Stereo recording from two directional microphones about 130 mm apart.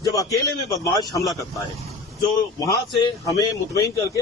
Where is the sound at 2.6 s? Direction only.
30° left (ahead or behind).